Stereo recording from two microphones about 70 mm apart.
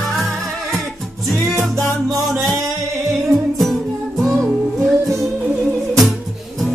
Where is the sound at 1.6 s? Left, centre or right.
Right.